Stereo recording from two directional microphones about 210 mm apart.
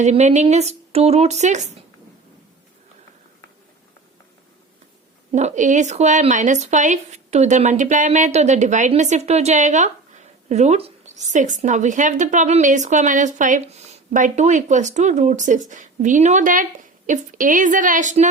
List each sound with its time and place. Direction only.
0.0 s speech: 35° right (ahead or behind)
5.3 s speech: 35° right (ahead or behind)